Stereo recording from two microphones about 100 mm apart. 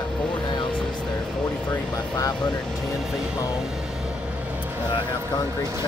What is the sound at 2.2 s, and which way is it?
Speech, 40° left (ahead or behind).